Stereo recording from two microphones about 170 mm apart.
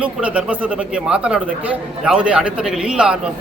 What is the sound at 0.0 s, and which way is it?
A man's voice, 10° right (ahead or behind).